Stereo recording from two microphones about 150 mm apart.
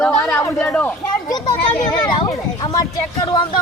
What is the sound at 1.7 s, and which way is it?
Speech, 10° left (ahead or behind).